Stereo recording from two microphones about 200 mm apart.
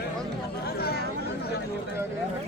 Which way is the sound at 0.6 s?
50° left (ahead or behind).